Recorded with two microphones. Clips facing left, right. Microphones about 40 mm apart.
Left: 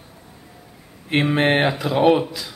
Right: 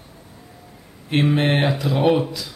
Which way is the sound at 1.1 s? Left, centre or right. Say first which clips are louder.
Left 1 dB; centre.